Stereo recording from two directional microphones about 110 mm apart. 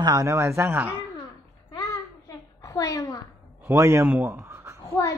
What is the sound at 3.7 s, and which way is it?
Speech, 25° right (ahead or behind).